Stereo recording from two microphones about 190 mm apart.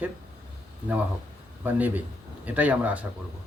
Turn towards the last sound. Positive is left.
turn(degrees=-10)  # may be behind; listen again after turning